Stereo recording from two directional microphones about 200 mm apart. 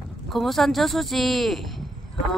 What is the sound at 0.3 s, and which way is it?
Speech, centre (ahead or behind).